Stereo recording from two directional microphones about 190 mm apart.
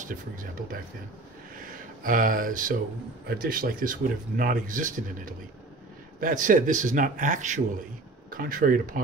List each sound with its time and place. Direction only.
0.0 s speech: 45° right (ahead or behind)